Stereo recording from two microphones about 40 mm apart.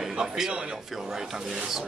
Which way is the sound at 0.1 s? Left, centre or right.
Centre.